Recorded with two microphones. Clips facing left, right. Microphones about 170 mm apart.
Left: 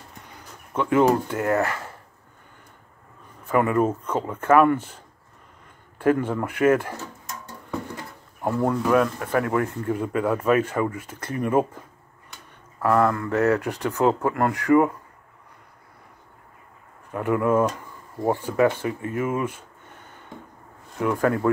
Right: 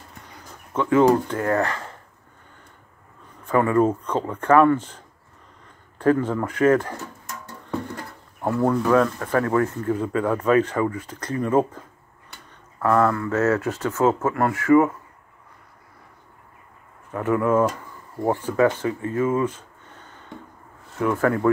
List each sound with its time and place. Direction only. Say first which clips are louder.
0.7 s speech: right 2 dB; 15° left (ahead or behind)
3.4 s speech: right 2 dB; 10° left (ahead or behind)
8.5 s speech: right 2 dB; 10° left (ahead or behind)
12.8 s speech: right 1 dB; 15° left (ahead or behind)
17.1 s speech: right 1 dB; 15° left (ahead or behind)
19.3 s a sound: right 4 dB; 10° left (ahead or behind)
21.0 s speech: right 1 dB; 15° left (ahead or behind)